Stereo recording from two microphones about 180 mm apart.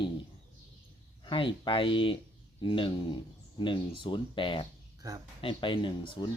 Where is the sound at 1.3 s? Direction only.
25° left (ahead or behind).